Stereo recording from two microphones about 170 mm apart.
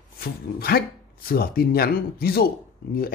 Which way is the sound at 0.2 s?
65° left (ahead or behind).